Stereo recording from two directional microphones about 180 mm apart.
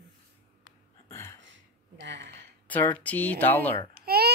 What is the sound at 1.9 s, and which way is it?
Speech, 75° right (ahead or behind).